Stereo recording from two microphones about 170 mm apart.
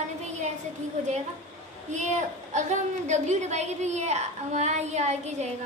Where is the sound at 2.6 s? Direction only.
45° right (ahead or behind).